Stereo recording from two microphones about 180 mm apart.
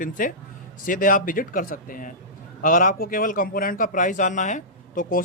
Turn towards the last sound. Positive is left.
turn(degrees=50)  # may be behind; listen again after turning